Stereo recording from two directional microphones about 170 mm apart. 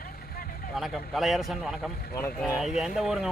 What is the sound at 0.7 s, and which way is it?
Speech, centre (ahead or behind).